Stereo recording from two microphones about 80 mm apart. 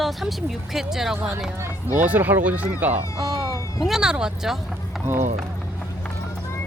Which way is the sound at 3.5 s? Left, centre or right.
Left.